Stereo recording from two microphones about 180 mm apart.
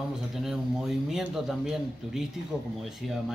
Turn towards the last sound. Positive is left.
turn(degrees=0)  # may be behind; listen again after turning